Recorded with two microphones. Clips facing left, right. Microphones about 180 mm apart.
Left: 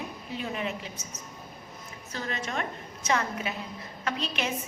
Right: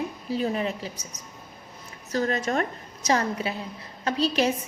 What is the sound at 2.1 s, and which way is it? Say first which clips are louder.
A woman's voice: right 9 dB; 40° right (ahead or behind).